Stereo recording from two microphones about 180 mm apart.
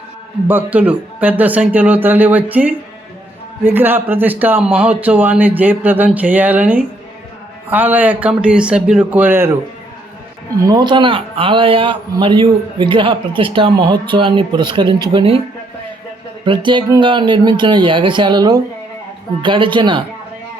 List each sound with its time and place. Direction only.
0.4 s speech: 10° right (ahead or behind)
10.7 s speech: 25° right (ahead or behind)
16.5 s speech: 25° right (ahead or behind)